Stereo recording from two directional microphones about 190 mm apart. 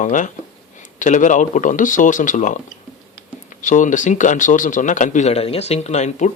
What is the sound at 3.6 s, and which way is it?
A man's voice, 40° left (ahead or behind).